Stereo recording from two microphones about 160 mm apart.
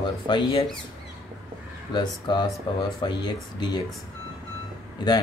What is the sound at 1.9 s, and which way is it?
Speech, 30° left (ahead or behind).